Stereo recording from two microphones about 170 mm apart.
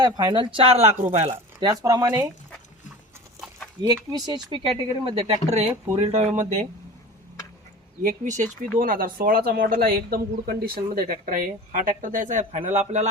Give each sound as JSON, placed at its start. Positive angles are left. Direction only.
{"t": 0.0, "sound": "speech", "side_deg": -25}
{"t": 1.3, "sound": "speech", "side_deg": -20}
{"t": 3.8, "sound": "speech", "side_deg": -25}
{"t": 8.0, "sound": "speech", "side_deg": -50}